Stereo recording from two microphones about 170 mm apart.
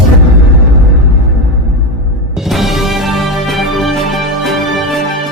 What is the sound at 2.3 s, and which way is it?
Music, centre (ahead or behind).